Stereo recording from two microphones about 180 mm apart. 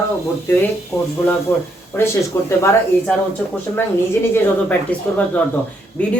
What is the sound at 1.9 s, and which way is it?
Speech, 15° left (ahead or behind).